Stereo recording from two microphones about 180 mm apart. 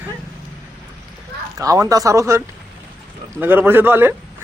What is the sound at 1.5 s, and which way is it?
A man's voice, 20° right (ahead or behind).